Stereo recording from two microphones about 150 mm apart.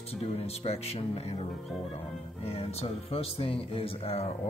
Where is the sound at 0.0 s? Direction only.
40° left (ahead or behind).